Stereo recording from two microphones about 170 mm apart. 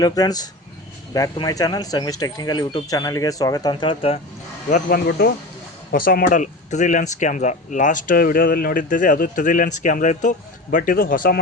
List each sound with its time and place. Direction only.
0.0 s speech: 20° left (ahead or behind)
4.7 s speech: 65° left (ahead or behind)